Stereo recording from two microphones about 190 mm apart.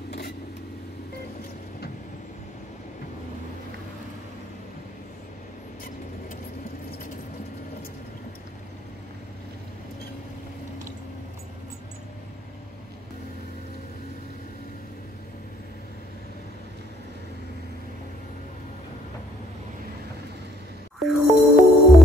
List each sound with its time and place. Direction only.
21.1 s music: centre (ahead or behind)